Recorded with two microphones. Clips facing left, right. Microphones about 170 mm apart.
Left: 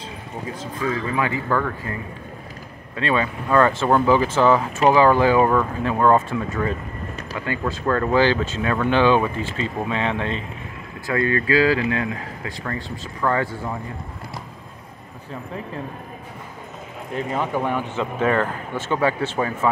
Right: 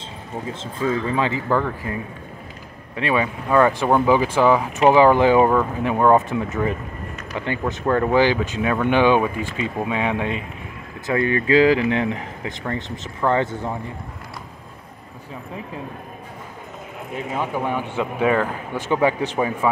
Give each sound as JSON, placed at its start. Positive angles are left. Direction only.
{"t": 0.6, "sound": "speech", "side_deg": -25}
{"t": 3.0, "sound": "speech", "side_deg": -15}
{"t": 17.1, "sound": "speech", "side_deg": -10}